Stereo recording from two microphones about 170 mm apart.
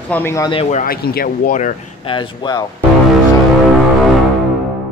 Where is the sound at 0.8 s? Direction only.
60° left (ahead or behind).